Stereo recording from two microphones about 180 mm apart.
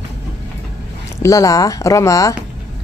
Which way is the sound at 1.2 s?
20° left (ahead or behind).